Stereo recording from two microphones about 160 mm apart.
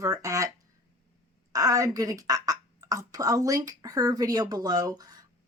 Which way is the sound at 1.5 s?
20° right (ahead or behind).